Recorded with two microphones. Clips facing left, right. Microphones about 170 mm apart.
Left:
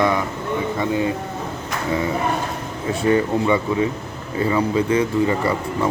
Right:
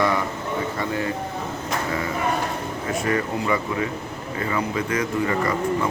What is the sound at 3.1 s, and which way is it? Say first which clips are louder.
Speech: left 7 dB; 25° left (ahead or behind).